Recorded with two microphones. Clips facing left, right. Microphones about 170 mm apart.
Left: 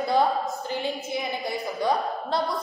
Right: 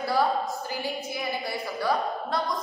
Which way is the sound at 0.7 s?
20° left (ahead or behind).